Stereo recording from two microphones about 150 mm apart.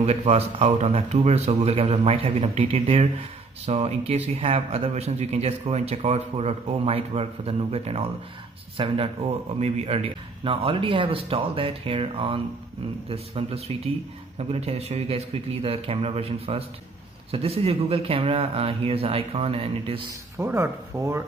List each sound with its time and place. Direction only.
0.0 s a man's voice: 50° right (ahead or behind)
20.3 s speech: 20° right (ahead or behind)